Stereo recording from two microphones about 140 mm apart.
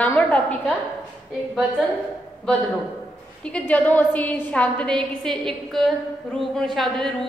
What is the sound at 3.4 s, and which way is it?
A woman's voice, 10° left (ahead or behind).